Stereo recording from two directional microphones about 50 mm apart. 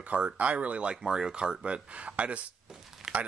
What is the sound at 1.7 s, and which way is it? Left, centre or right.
Speech, right.